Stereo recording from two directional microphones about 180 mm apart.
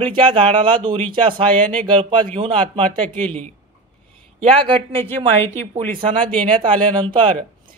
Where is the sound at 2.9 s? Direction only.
10° left (ahead or behind).